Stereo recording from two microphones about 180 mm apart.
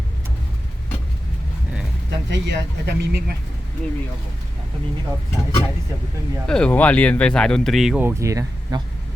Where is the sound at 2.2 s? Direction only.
75° right (ahead or behind).